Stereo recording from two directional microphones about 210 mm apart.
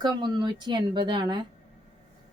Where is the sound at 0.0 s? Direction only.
20° right (ahead or behind).